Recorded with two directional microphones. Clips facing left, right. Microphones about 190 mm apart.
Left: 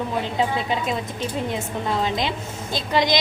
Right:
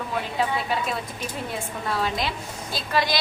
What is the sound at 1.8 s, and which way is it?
A woman's voice, 20° left (ahead or behind).